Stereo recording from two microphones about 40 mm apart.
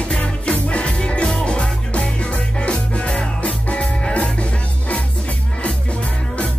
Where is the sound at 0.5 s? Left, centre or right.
Left.